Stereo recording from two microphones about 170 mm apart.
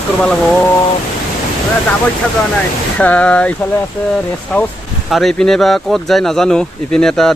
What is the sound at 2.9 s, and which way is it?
Speech, 10° left (ahead or behind).